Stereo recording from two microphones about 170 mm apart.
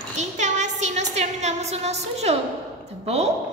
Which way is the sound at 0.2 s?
45° right (ahead or behind).